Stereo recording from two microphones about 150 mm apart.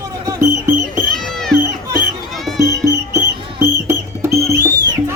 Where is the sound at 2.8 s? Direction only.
20° right (ahead or behind).